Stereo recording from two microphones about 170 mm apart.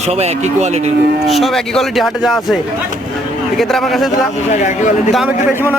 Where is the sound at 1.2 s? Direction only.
Centre (ahead or behind).